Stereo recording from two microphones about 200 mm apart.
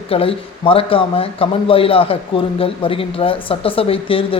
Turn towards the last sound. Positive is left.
turn(degrees=25)  # may be behind; listen again after turning